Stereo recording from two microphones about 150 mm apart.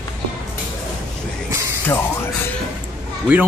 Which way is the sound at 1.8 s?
15° left (ahead or behind).